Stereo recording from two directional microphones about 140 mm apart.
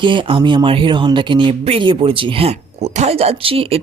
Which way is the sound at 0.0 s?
35° right (ahead or behind).